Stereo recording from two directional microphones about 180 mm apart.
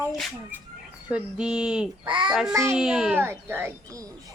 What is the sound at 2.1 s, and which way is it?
Speech, 25° right (ahead or behind).